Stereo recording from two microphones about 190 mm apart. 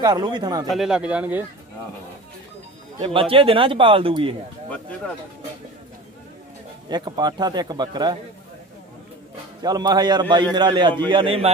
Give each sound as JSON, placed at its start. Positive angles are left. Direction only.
{"t": 0.0, "sound": "a man's voice", "side_deg": -20}
{"t": 0.7, "sound": "speech", "side_deg": 0}
{"t": 3.0, "sound": "a man's voice", "side_deg": -30}
{"t": 6.9, "sound": "a man's voice", "side_deg": -20}
{"t": 9.6, "sound": "a man's voice", "side_deg": -20}